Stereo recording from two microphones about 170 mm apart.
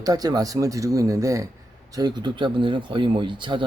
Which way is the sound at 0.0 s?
20° right (ahead or behind).